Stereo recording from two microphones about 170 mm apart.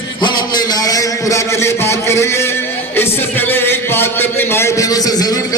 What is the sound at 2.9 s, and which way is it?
Music, 10° left (ahead or behind).